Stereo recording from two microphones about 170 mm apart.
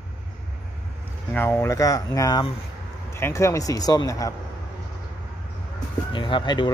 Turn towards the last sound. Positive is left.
turn(degrees=25)  # may be behind; listen again after turning